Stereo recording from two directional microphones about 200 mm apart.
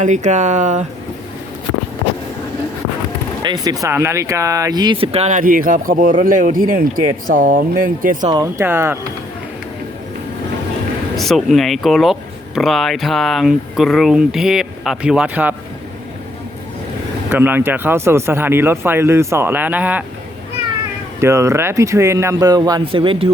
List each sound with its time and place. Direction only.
0.0 s speech: 35° right (ahead or behind)
3.4 s speech: 20° right (ahead or behind); by 8.3 s 40° right (ahead or behind)
8.3 s speech: 20° right (ahead or behind)
8.6 s speech: 10° right (ahead or behind)
11.2 s speech: centre (ahead or behind)
17.3 s speech: 10° right (ahead or behind)
21.2 s speech: 15° right (ahead or behind)